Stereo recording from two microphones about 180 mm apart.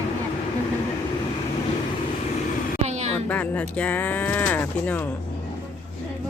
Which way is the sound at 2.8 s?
40° right (ahead or behind).